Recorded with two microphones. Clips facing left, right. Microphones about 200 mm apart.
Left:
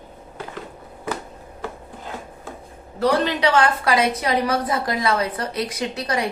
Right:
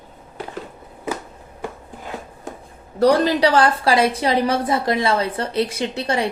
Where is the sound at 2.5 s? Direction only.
20° right (ahead or behind).